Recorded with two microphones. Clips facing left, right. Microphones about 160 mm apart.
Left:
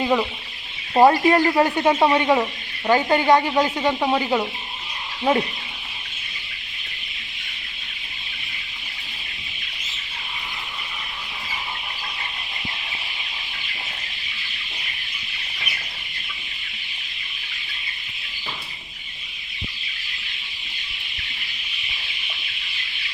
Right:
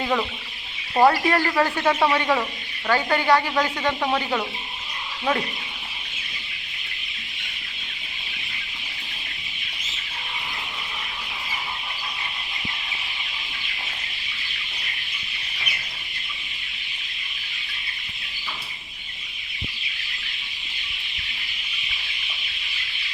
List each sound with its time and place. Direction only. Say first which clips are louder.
0.0 s speech: left 4 dB; 10° left (ahead or behind)